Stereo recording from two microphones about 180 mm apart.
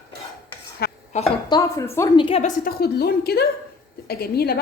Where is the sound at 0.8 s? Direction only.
60° left (ahead or behind).